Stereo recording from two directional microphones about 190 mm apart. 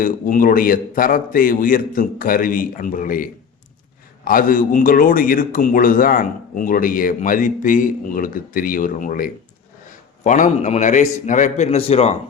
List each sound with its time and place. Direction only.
0.0 s a man's voice: 45° left (ahead or behind)